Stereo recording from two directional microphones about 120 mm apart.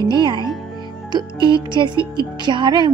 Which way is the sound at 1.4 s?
40° right (ahead or behind).